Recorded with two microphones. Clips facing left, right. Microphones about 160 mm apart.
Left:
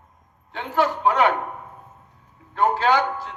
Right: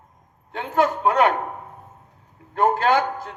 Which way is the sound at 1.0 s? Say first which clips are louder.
Even; 45° right (ahead or behind).